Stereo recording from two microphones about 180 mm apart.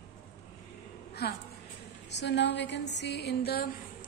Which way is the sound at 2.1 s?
75° left (ahead or behind).